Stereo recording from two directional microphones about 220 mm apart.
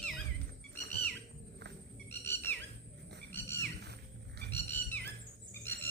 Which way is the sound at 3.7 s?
50° right (ahead or behind).